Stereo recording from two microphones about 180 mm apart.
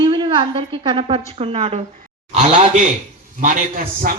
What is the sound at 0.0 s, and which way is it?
A woman's voice, 25° right (ahead or behind).